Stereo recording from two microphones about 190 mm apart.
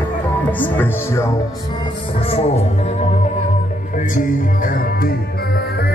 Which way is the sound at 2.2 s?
30° left (ahead or behind).